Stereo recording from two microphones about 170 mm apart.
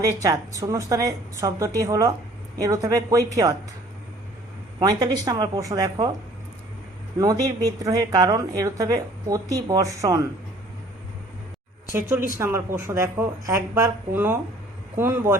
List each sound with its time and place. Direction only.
0.0 s a woman's voice: 20° right (ahead or behind)
4.8 s a woman's voice: 25° right (ahead or behind)
7.2 s a woman's voice: 20° right (ahead or behind)
11.9 s speech: 15° right (ahead or behind)